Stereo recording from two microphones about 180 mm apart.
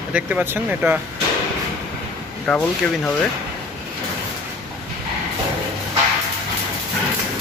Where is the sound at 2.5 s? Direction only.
Centre (ahead or behind).